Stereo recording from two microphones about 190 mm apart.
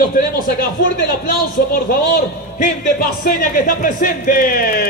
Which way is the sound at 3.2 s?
50° left (ahead or behind).